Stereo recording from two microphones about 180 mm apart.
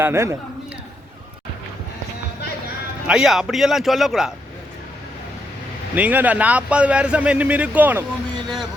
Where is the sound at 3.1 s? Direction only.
5° right (ahead or behind).